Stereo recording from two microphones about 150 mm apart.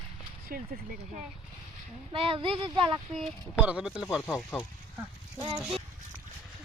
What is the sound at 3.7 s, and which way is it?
Gasp, 5° right (ahead or behind).